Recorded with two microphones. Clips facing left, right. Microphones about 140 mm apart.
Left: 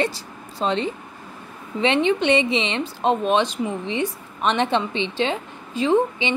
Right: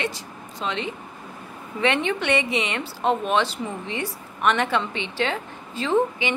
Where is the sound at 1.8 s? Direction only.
20° left (ahead or behind).